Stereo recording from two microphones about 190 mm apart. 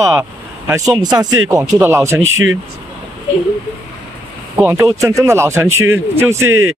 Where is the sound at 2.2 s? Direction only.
90° right.